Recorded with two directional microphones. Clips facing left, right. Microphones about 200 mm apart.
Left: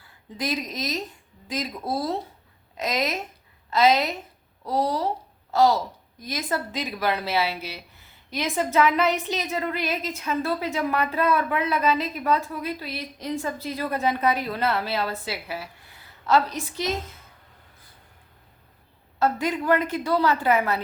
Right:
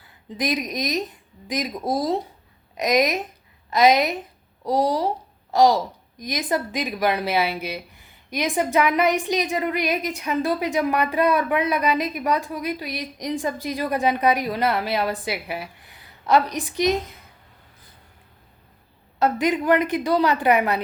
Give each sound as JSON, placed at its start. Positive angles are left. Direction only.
{"t": 0.3, "sound": "a woman's voice", "side_deg": -15}
{"t": 19.2, "sound": "a woman's voice", "side_deg": -20}